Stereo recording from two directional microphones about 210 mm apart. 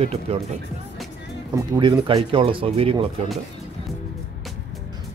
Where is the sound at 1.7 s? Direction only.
20° right (ahead or behind).